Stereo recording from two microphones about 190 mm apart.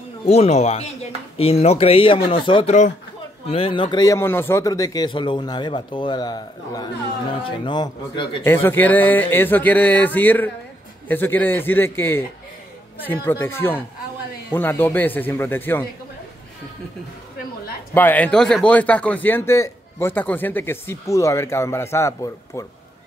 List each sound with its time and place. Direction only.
0.3 s speech: 35° left (ahead or behind)
8.5 s a man's voice: 10° left (ahead or behind)
17.9 s a man's voice: 10° left (ahead or behind)